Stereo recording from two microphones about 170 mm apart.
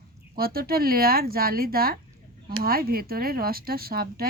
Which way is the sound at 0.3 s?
60° right (ahead or behind).